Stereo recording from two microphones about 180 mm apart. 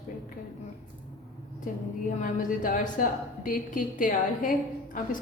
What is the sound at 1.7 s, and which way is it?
A woman's voice, 50° left (ahead or behind).